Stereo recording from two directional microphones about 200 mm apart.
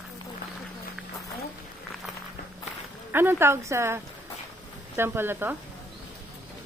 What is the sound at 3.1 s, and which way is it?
Speech, 10° right (ahead or behind).